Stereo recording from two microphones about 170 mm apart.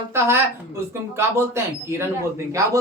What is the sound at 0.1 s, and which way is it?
Speech, 15° right (ahead or behind).